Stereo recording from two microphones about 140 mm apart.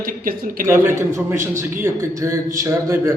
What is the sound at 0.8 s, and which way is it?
A man's voice, 20° right (ahead or behind).